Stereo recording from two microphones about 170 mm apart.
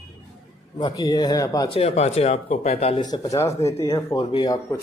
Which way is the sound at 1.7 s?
35° left (ahead or behind).